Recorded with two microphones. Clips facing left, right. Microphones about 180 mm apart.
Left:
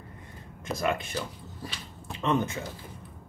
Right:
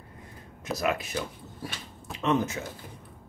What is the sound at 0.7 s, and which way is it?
Speech, 5° right (ahead or behind).